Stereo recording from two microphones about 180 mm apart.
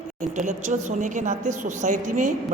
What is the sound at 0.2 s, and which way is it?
A woman's voice, 45° right (ahead or behind).